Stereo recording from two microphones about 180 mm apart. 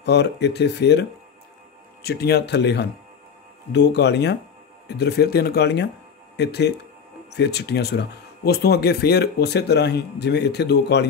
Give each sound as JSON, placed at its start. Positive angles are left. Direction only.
{"t": 0.0, "sound": "speech", "side_deg": 70}
{"t": 2.0, "sound": "speech", "side_deg": 60}